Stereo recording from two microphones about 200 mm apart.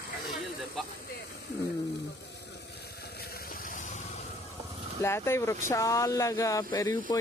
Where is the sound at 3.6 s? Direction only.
40° left (ahead or behind).